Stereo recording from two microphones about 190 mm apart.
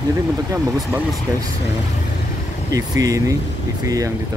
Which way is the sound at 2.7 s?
20° right (ahead or behind).